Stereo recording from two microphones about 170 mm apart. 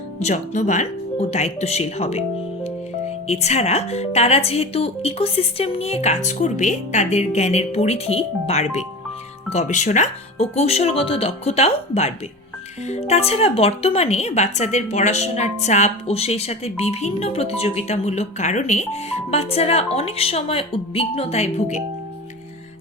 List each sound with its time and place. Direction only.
0.2 s speech: 40° left (ahead or behind)
3.2 s speech: 40° left (ahead or behind)